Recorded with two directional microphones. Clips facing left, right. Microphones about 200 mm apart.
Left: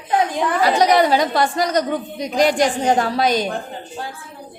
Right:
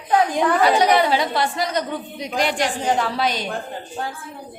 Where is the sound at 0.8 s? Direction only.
45° left (ahead or behind).